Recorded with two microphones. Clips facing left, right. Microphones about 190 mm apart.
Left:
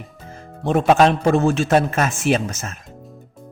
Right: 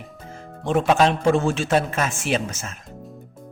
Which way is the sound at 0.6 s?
45° left (ahead or behind).